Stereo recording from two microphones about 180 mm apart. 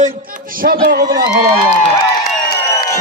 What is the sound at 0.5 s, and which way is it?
Speech, 55° right (ahead or behind).